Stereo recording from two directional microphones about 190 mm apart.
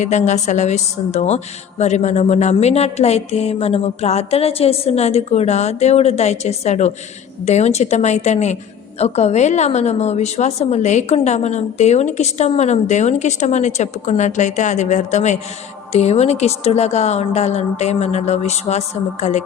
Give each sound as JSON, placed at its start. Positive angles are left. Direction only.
{"t": 0.0, "sound": "a woman's voice", "side_deg": 40}